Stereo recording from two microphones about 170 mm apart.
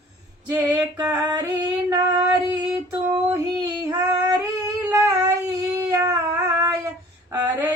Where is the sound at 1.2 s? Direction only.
25° right (ahead or behind).